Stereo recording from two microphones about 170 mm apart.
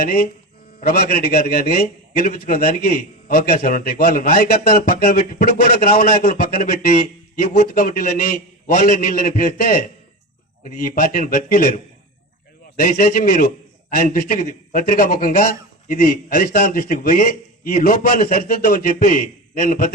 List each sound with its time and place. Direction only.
0.8 s a man's voice: 60° left (ahead or behind)
12.8 s a man's voice: 50° left (ahead or behind)